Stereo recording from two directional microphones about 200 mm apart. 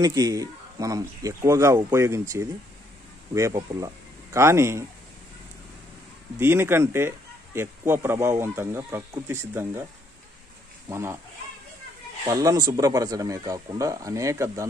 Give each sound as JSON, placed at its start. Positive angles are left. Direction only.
{"t": 0.0, "sound": "speech", "side_deg": -20}
{"t": 6.4, "sound": "speech", "side_deg": -10}
{"t": 10.9, "sound": "speech", "side_deg": -15}
{"t": 12.3, "sound": "speech", "side_deg": -15}